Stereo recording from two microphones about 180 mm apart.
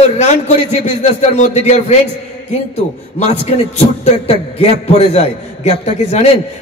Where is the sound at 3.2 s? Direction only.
35° left (ahead or behind).